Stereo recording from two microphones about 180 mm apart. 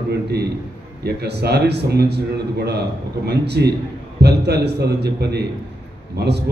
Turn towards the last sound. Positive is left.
turn(degrees=-70)  # may be behind; listen again after turning